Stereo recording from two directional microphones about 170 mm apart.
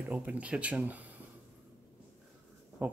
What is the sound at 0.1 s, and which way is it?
Speech, 10° right (ahead or behind).